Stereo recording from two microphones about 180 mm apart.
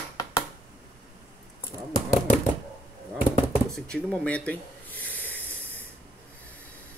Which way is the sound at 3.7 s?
5° left (ahead or behind).